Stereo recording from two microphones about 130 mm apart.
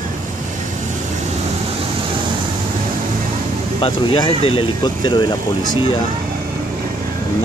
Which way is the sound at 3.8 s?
40° left (ahead or behind).